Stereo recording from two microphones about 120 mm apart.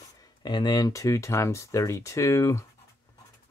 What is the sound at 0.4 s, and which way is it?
Speech, 40° left (ahead or behind).